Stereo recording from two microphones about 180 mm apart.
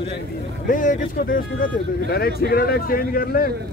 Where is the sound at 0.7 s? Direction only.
45° left (ahead or behind).